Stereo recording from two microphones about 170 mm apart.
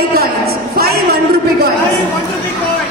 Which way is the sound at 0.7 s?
65° right (ahead or behind).